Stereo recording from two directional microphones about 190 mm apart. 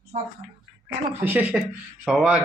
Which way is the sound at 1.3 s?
10° right (ahead or behind).